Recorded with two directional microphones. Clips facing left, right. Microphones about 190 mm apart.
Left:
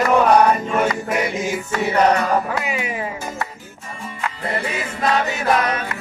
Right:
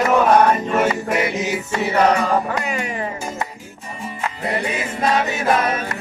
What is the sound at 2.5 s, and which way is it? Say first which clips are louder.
Speech: even; 5° left (ahead or behind).